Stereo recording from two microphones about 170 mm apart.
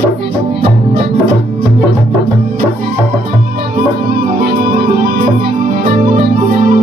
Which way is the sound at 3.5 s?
60° right (ahead or behind).